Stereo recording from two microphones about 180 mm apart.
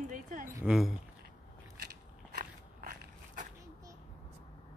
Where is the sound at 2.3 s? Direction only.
55° right (ahead or behind).